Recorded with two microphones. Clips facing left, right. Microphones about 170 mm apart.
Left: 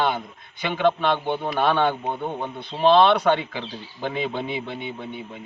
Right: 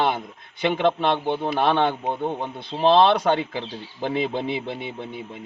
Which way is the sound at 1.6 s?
25° right (ahead or behind).